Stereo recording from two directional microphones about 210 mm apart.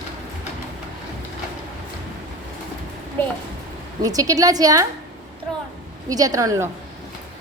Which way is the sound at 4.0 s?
15° right (ahead or behind).